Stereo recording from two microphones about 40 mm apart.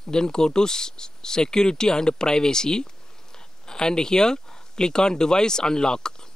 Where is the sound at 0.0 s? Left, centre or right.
Centre.